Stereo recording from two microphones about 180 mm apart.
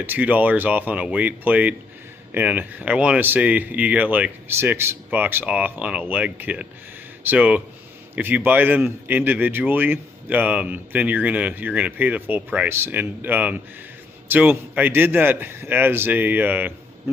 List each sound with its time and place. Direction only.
0.0 s a man's voice: 10° right (ahead or behind)